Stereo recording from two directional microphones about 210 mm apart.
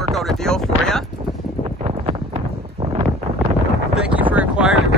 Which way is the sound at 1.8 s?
25° right (ahead or behind).